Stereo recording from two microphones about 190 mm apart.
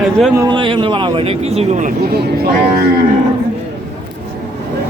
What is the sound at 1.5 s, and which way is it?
Speech, 30° right (ahead or behind).